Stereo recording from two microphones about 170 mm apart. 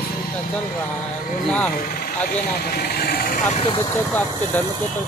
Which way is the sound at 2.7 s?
65° left (ahead or behind).